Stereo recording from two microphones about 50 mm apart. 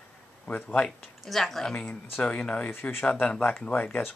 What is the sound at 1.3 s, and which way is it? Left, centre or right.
Speech, centre.